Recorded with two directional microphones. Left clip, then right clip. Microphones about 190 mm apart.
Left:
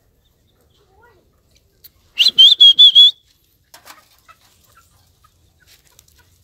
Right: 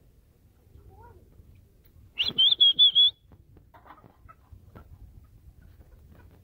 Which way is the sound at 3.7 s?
40° left (ahead or behind).